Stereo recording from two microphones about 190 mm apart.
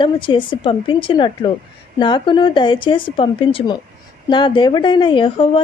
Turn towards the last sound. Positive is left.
turn(degrees=25)  # may be behind; listen again after turning